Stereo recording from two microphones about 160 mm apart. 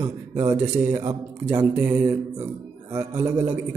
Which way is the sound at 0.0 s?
20° right (ahead or behind).